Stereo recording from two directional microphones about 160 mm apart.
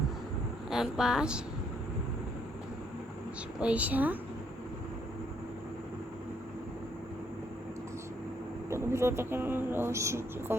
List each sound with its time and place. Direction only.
0.7 s speech: 5° right (ahead or behind)
3.6 s speech: 10° right (ahead or behind)
8.7 s speech: 15° right (ahead or behind)